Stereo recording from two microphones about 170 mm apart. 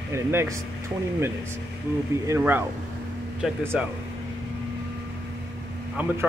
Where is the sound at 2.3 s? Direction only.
15° right (ahead or behind).